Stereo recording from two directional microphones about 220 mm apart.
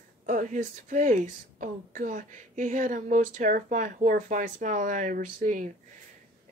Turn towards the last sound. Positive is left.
turn(degrees=-35)  # may be behind; listen again after turning